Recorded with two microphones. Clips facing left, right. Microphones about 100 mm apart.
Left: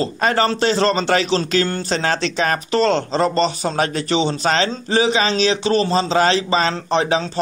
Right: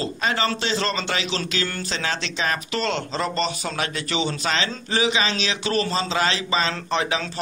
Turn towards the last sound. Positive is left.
turn(degrees=35)  # may be behind; listen again after turning